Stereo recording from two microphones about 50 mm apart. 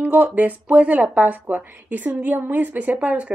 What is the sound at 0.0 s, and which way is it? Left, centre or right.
Speech, right.